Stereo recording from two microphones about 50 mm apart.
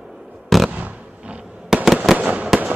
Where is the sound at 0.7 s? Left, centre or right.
Right.